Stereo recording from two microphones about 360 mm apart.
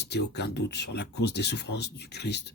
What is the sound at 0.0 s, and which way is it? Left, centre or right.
Speech, left.